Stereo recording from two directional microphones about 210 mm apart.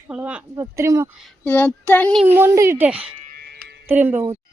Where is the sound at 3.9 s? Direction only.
10° right (ahead or behind).